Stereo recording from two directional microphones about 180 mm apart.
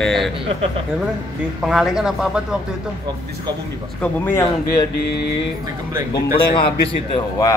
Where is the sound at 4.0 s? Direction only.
10° left (ahead or behind).